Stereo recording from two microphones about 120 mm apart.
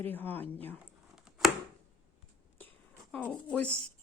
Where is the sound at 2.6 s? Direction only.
15° left (ahead or behind).